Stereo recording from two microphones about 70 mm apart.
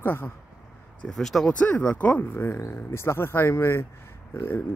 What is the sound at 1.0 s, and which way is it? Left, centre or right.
Speech, centre.